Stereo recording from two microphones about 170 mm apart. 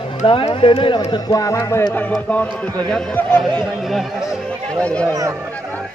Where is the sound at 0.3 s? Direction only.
30° left (ahead or behind); by 5.1 s 5° left (ahead or behind).